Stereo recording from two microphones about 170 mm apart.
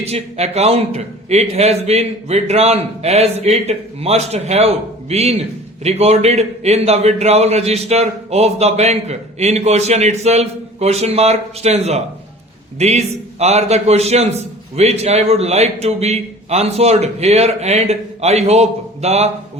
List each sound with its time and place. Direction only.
0.1 s a man's voice: 40° right (ahead or behind)